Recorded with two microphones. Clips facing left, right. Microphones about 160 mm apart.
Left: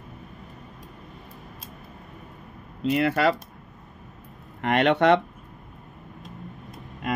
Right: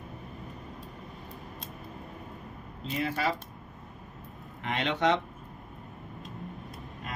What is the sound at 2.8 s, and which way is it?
Speech, 70° left (ahead or behind).